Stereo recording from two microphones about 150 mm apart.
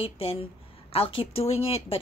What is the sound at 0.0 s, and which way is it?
A woman's voice, 40° left (ahead or behind).